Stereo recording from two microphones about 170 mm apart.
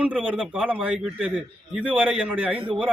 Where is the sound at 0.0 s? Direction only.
10° right (ahead or behind).